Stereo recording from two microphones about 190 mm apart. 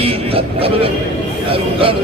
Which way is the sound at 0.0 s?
30° right (ahead or behind).